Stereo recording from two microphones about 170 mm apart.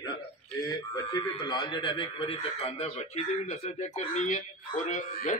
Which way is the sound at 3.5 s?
45° left (ahead or behind).